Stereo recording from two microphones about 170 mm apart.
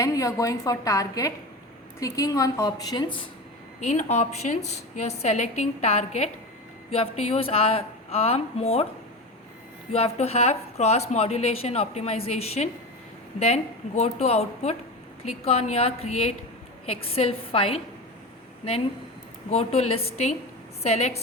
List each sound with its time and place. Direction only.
0.0 s a woman's voice: 20° left (ahead or behind)
3.8 s a woman's voice: 45° left (ahead or behind)
9.9 s a woman's voice: 35° left (ahead or behind)
19.5 s a woman's voice: 35° left (ahead or behind)